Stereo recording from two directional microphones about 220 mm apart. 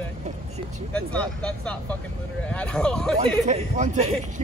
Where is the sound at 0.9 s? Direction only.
5° left (ahead or behind).